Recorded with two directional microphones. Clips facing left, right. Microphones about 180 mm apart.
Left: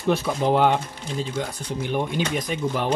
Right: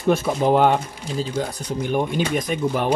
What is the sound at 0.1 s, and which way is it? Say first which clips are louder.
Speech: right 3 dB; 45° right (ahead or behind).